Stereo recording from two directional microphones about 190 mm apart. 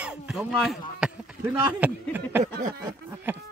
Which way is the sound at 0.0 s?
5° right (ahead or behind).